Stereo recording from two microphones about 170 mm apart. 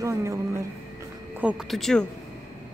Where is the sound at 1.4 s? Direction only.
5° right (ahead or behind).